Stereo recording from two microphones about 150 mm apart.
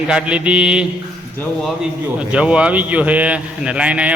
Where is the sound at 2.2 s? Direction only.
5° right (ahead or behind).